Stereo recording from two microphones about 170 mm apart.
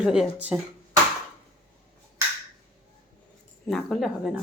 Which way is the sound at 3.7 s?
Centre (ahead or behind).